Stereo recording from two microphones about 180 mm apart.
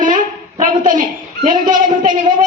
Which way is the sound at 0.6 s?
45° right (ahead or behind).